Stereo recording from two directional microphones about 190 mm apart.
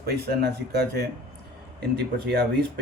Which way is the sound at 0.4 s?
55° right (ahead or behind).